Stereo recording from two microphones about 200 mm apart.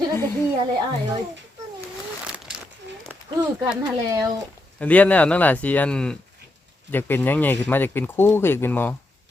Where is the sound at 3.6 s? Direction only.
20° right (ahead or behind).